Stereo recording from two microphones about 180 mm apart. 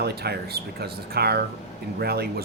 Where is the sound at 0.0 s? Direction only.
65° right (ahead or behind).